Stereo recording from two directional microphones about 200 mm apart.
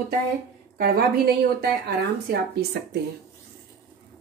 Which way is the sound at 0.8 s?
50° right (ahead or behind).